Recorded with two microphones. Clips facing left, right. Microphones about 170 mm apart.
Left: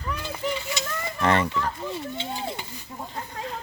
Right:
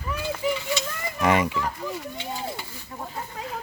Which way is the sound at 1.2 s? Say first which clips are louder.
Right 1 dB; 10° right (ahead or behind).